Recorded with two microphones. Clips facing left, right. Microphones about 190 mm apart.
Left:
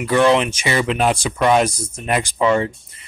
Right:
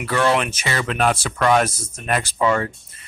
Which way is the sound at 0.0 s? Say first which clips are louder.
Left 4 dB; 15° left (ahead or behind).